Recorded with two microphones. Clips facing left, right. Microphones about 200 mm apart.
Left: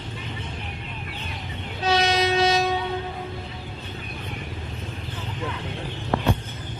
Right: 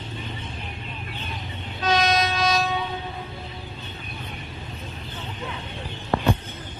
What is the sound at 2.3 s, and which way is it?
Train, 25° left (ahead or behind).